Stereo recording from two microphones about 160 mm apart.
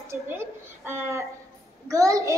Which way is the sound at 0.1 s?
15° right (ahead or behind).